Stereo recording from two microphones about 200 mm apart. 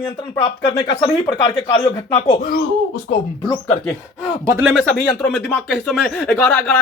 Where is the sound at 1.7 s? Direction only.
25° left (ahead or behind).